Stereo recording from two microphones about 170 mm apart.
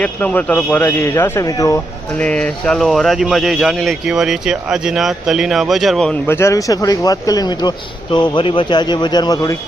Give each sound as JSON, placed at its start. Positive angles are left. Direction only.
{"t": 0.0, "sound": "a man's voice", "side_deg": 10}
{"t": 2.2, "sound": "speech", "side_deg": 5}